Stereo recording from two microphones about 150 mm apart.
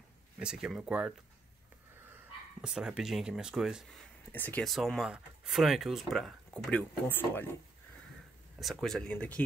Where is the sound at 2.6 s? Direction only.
5° right (ahead or behind).